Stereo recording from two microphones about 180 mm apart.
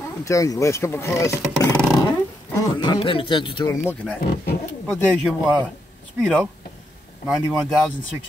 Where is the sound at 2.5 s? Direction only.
25° left (ahead or behind).